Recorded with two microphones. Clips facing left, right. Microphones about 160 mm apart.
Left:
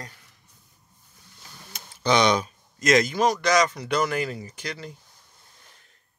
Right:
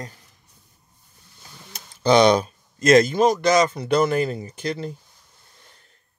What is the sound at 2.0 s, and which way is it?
Speech, 35° right (ahead or behind).